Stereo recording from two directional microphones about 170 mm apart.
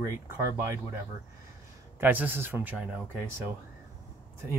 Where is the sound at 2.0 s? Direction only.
10° right (ahead or behind).